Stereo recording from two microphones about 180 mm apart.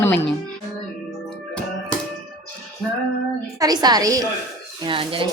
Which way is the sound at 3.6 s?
20° right (ahead or behind).